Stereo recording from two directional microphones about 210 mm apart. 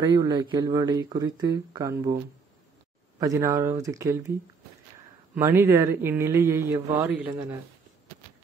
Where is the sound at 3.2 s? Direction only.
15° right (ahead or behind).